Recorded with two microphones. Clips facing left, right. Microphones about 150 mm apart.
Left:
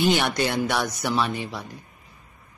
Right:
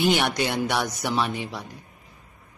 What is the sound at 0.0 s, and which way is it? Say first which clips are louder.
A man's voice: left 1 dB; 15° right (ahead or behind).